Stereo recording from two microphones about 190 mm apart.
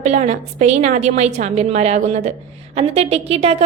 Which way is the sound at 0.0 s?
40° right (ahead or behind).